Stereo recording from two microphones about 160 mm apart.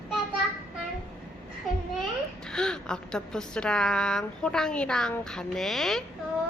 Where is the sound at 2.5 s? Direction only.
5° left (ahead or behind).